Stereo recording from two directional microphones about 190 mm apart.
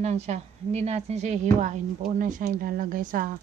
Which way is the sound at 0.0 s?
35° right (ahead or behind).